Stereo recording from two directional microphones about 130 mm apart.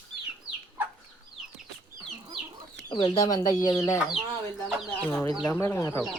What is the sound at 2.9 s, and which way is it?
Speech, 40° left (ahead or behind).